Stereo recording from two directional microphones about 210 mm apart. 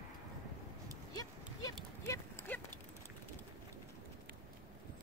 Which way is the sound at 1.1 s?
15° left (ahead or behind).